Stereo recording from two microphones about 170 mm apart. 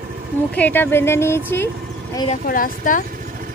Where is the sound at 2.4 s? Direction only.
55° left (ahead or behind).